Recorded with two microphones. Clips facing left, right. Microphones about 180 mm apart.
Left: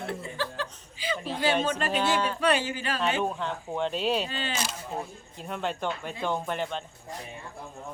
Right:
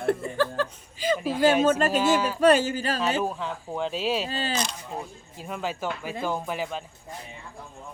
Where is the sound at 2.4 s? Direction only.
40° right (ahead or behind).